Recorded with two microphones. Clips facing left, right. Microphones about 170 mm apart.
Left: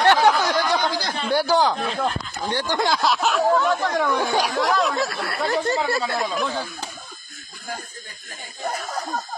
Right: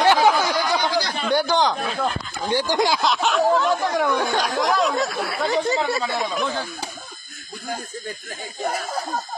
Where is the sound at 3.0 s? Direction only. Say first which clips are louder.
Right 1 dB; centre (ahead or behind).